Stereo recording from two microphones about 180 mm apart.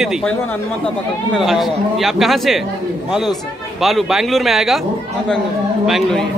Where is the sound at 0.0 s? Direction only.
Centre (ahead or behind).